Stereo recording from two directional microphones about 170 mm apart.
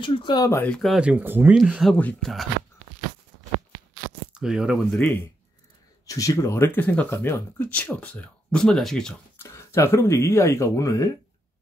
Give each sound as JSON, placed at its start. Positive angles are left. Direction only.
{"t": 0.0, "sound": "speech", "side_deg": 30}
{"t": 4.3, "sound": "speech", "side_deg": -5}
{"t": 6.0, "sound": "speech", "side_deg": 20}
{"t": 9.4, "sound": "speech", "side_deg": 15}